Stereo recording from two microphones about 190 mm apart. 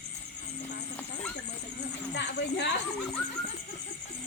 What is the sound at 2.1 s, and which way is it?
Speech, 65° left (ahead or behind).